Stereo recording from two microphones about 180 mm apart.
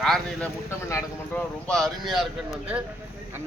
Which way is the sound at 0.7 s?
15° left (ahead or behind).